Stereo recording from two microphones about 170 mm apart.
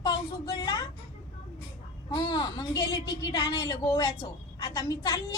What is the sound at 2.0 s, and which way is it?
A woman's voice, 25° left (ahead or behind).